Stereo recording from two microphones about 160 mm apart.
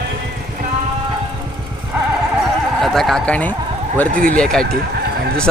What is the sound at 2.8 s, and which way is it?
Speech, centre (ahead or behind).